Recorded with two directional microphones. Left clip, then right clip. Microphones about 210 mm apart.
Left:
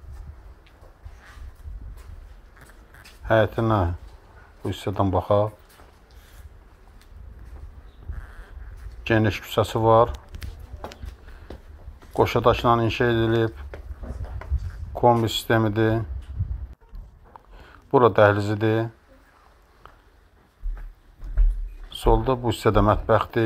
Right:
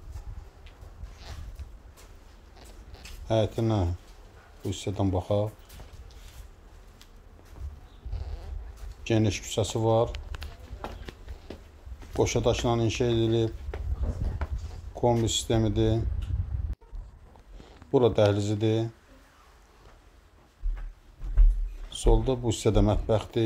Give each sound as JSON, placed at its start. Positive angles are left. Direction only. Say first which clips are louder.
{"t": 3.3, "sound": "speech", "louder": "left 7 dB", "side_deg": 0}
{"t": 9.1, "sound": "speech", "louder": "left 6 dB", "side_deg": 0}
{"t": 12.2, "sound": "speech", "louder": "left 6 dB", "side_deg": -10}
{"t": 15.0, "sound": "speech", "louder": "left 7 dB", "side_deg": 0}
{"t": 17.9, "sound": "speech", "louder": "left 6 dB", "side_deg": -10}
{"t": 22.0, "sound": "a sound", "louder": "left 6 dB", "side_deg": 15}
{"t": 22.5, "sound": "speech", "louder": "left 7 dB", "side_deg": -10}